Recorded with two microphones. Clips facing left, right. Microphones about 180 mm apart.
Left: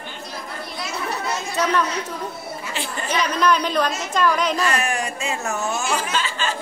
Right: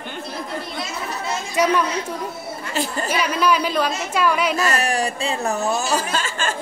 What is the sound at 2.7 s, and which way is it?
Speech, 40° right (ahead or behind).